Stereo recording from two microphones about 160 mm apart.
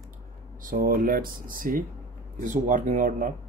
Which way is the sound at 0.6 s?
60° right (ahead or behind).